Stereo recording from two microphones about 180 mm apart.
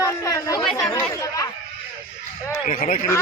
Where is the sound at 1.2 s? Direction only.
20° left (ahead or behind).